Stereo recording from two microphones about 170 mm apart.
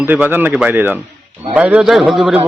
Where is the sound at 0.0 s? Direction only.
10° right (ahead or behind).